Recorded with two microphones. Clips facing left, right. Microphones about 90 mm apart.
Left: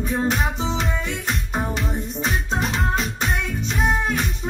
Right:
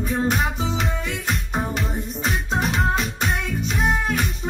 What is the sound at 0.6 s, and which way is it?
Music, 40° left (ahead or behind).